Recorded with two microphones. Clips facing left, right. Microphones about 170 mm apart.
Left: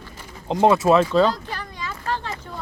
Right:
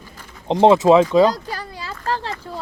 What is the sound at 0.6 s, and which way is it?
Speech, 20° right (ahead or behind).